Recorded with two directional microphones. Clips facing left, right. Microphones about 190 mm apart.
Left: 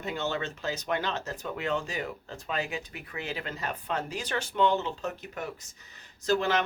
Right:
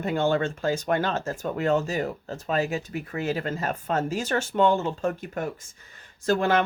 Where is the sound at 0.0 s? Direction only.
50° right (ahead or behind).